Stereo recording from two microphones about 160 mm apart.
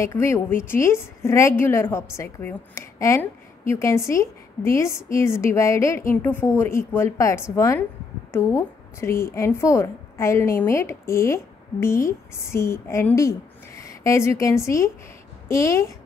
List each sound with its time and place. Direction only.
0.0 s a woman's voice: 15° left (ahead or behind)